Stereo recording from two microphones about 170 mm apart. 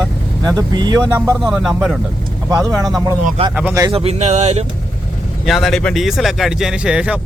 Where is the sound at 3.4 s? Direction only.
35° right (ahead or behind).